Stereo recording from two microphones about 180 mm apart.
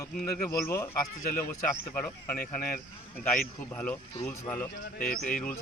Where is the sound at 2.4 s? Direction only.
55° left (ahead or behind).